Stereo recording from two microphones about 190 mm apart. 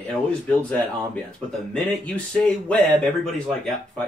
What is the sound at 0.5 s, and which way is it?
Speech, 5° left (ahead or behind).